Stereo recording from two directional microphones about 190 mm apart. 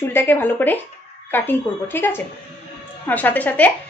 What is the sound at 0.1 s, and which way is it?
A woman's voice, 10° left (ahead or behind).